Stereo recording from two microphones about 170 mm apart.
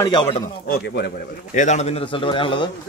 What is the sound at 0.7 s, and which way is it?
Speech, 90° left.